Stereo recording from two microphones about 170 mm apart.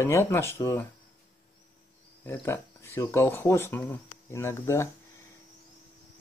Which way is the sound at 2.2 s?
15° left (ahead or behind).